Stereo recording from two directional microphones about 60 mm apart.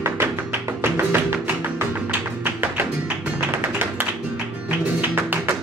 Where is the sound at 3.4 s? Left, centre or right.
Right.